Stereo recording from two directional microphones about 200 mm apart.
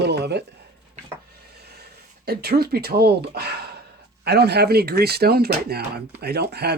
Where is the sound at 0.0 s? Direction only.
55° right (ahead or behind).